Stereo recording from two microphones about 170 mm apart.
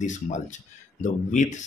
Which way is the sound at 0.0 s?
45° left (ahead or behind).